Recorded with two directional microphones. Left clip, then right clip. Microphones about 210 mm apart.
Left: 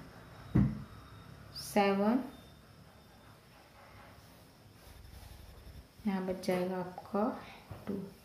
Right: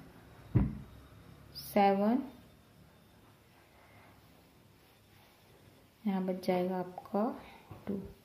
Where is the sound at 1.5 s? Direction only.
40° right (ahead or behind).